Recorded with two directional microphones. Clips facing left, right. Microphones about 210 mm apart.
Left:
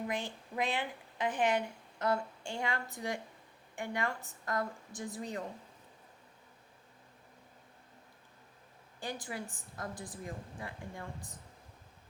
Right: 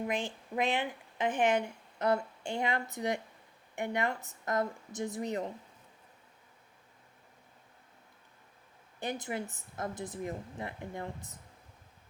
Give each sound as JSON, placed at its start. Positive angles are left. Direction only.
{"t": 0.5, "sound": "a woman's voice", "side_deg": -20}
{"t": 9.0, "sound": "a woman's voice", "side_deg": -20}